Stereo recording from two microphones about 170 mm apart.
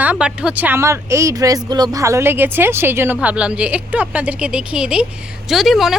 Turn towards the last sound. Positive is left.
turn(degrees=0)  # may be behind; listen again after turning